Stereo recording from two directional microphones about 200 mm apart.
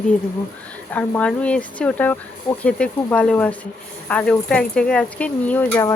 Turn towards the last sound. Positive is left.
turn(degrees=10)  # may be behind; listen again after turning